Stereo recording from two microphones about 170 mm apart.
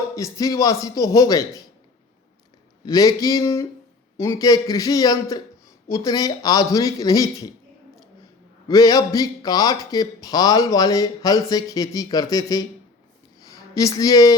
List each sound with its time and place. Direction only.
0.2 s speech: 20° left (ahead or behind)
2.8 s speech: 20° left (ahead or behind)
8.6 s speech: 20° left (ahead or behind)